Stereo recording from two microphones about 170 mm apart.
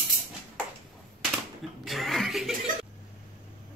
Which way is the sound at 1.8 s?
Centre (ahead or behind).